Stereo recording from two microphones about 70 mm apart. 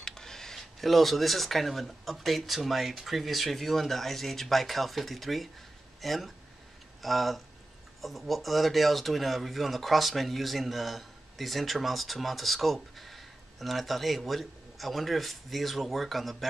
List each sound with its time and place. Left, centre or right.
0.0 s speech: centre